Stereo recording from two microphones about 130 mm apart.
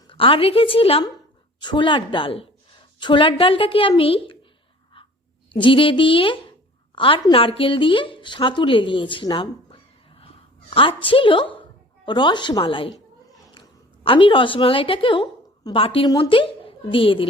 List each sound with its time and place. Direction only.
0.1 s a woman's voice: 45° left (ahead or behind)
5.5 s a woman's voice: 40° left (ahead or behind)
16.0 s a woman's voice: 35° left (ahead or behind)